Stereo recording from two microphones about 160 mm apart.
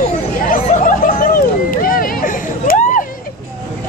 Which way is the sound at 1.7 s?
60° left (ahead or behind).